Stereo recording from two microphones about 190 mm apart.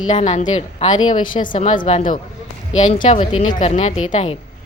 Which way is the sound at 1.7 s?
25° left (ahead or behind).